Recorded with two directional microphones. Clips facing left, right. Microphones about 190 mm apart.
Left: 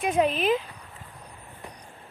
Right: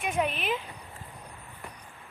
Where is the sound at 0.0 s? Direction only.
35° left (ahead or behind).